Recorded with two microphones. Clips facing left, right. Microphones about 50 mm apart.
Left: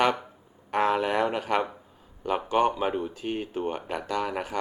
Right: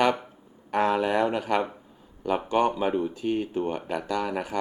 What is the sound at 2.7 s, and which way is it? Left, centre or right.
Speech, centre.